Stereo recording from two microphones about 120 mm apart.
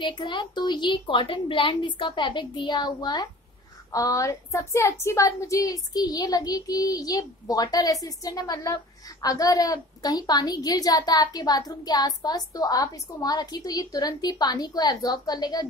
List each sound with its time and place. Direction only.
0.0 s a woman's voice: 40° left (ahead or behind)
3.9 s a woman's voice: 30° left (ahead or behind)